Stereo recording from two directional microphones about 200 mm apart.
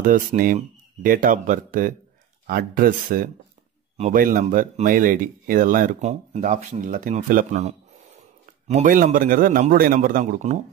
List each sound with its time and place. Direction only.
0.0 s speech: 45° right (ahead or behind)